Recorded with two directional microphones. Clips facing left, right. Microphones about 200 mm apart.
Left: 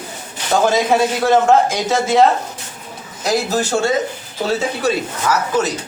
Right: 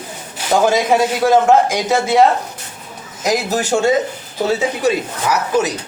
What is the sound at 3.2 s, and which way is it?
Speech, 15° right (ahead or behind).